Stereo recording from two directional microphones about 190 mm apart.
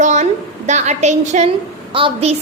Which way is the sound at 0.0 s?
40° right (ahead or behind).